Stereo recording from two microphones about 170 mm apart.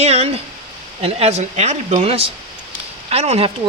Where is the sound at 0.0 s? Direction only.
40° right (ahead or behind).